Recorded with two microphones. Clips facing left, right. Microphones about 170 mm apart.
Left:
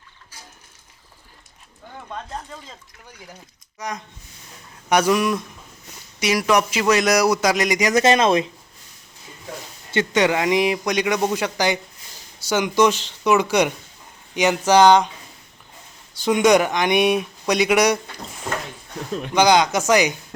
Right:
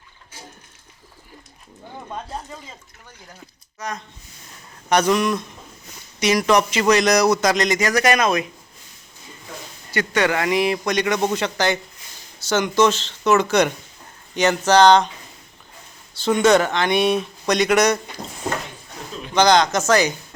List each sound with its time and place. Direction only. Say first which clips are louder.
2.0 s speech: right 1 dB; 10° right (ahead or behind)
3.8 s a man's voice: even; 15° left (ahead or behind)
9.9 s a man's voice: left 2 dB; 20° left (ahead or behind)
16.1 s a man's voice: even; 15° left (ahead or behind)
19.3 s a man's voice: even; 10° left (ahead or behind)